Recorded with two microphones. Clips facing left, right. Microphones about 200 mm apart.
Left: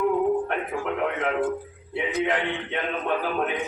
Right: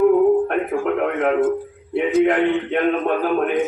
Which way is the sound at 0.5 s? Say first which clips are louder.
Right 7 dB; 50° right (ahead or behind).